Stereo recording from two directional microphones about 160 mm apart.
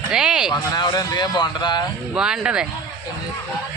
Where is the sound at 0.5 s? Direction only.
25° left (ahead or behind).